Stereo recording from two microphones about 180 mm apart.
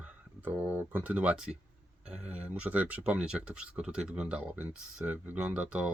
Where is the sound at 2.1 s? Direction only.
5° right (ahead or behind).